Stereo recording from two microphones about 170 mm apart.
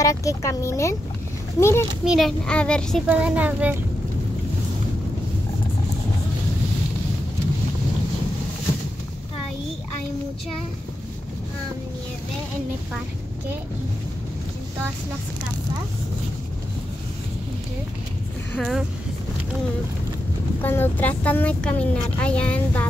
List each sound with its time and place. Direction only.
0.0 s speech: 20° left (ahead or behind)
2.0 s a child's voice: centre (ahead or behind)
3.1 s speech: 10° right (ahead or behind)
18.6 s a child's voice: centre (ahead or behind)
20.6 s speech: 10° left (ahead or behind)